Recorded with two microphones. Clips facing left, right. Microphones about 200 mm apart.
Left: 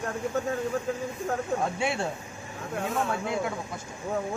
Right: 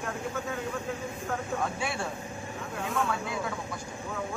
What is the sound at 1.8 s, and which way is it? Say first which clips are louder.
Speech: left 4 dB; 25° left (ahead or behind).